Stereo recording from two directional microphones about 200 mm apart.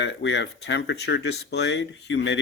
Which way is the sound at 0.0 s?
60° left (ahead or behind).